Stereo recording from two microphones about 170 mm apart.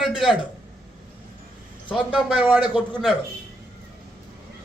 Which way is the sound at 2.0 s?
Centre (ahead or behind).